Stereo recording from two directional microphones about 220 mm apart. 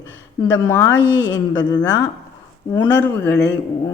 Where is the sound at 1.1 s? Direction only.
55° left (ahead or behind).